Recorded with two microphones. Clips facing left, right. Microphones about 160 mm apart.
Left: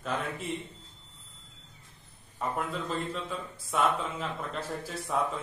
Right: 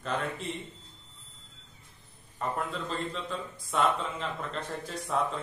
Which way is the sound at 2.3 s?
5° left (ahead or behind).